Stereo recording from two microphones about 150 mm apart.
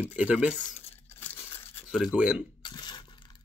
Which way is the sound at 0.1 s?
10° right (ahead or behind).